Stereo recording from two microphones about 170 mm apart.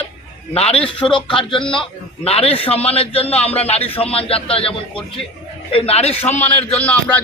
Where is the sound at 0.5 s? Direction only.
35° left (ahead or behind).